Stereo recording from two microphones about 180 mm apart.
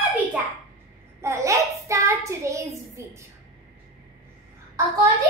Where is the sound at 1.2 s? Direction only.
15° right (ahead or behind).